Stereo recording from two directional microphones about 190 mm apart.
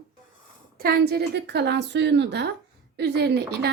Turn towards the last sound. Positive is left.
turn(degrees=-60)  # may be behind; listen again after turning